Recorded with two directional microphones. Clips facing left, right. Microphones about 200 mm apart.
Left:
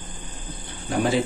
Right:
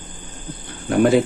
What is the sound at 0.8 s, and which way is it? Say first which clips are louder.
Speech: right 7 dB; 60° right (ahead or behind).